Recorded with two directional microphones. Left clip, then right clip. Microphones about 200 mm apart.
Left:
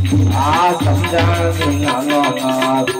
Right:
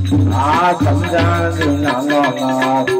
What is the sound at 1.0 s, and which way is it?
Music, 45° right (ahead or behind).